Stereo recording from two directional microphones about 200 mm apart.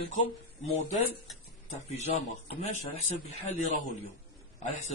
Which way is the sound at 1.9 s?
30° left (ahead or behind).